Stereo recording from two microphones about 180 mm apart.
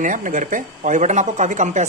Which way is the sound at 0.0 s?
45° right (ahead or behind).